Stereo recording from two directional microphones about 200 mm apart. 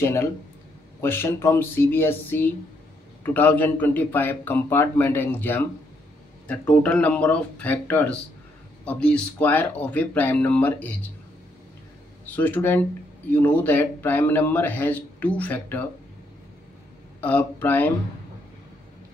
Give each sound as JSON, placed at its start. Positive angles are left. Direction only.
{"t": 0.0, "sound": "speech", "side_deg": 15}
{"t": 6.7, "sound": "speech", "side_deg": 5}
{"t": 12.3, "sound": "speech", "side_deg": 10}
{"t": 17.2, "sound": "speech", "side_deg": 10}